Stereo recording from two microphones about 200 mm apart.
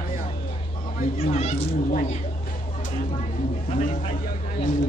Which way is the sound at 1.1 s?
30° left (ahead or behind).